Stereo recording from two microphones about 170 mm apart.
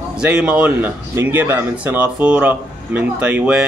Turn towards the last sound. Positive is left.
turn(degrees=-5)  # may be behind; listen again after turning